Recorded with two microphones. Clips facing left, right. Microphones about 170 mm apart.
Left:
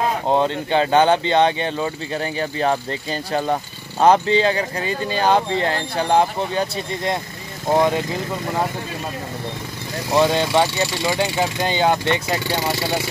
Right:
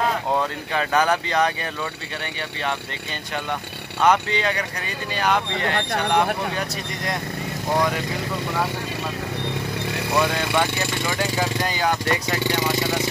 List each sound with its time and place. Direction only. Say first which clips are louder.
0.3 s speech: left 6 dB; 30° left (ahead or behind)
4.0 s speech: left 5 dB; 30° left (ahead or behind)
10.1 s speech: left 5 dB; 30° left (ahead or behind)